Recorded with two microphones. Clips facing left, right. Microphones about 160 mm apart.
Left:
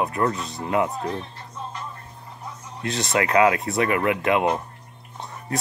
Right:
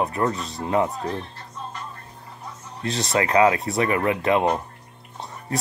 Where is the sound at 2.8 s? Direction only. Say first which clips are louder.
Even; 30° right (ahead or behind).